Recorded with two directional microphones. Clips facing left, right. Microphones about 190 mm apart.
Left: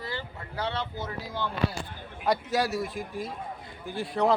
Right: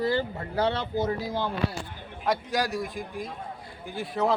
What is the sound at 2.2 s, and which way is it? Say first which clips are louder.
A man's voice: left 1 dB; centre (ahead or behind).